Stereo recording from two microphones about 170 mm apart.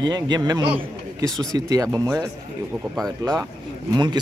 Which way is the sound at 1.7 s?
15° right (ahead or behind).